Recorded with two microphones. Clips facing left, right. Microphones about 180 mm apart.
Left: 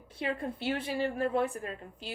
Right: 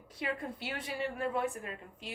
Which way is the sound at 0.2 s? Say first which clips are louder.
Left 4 dB; 30° left (ahead or behind).